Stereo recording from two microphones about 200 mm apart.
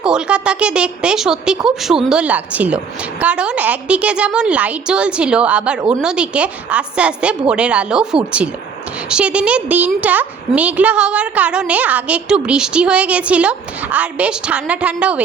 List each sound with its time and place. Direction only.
0.0 s a woman's voice: 5° right (ahead or behind)